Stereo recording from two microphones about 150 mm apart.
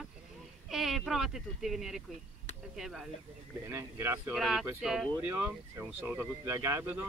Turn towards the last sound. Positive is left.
turn(degrees=-15)  # may be behind; listen again after turning